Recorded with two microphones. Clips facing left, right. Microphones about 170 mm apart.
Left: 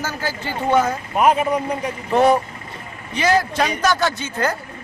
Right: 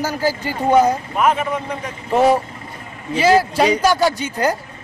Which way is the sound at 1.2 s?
35° left (ahead or behind).